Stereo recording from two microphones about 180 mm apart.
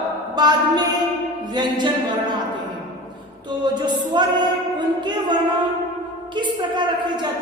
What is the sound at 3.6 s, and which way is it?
A woman's voice, 25° right (ahead or behind).